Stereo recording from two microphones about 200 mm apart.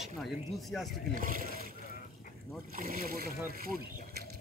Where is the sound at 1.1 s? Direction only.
45° right (ahead or behind).